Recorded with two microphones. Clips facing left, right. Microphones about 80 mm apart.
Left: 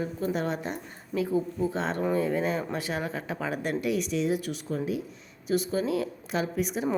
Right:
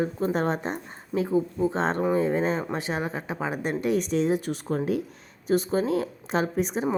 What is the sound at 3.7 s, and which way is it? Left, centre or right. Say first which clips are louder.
A woman's voice: right 5 dB; right.